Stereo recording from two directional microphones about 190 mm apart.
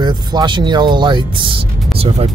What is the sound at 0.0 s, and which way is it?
Speech, 20° right (ahead or behind).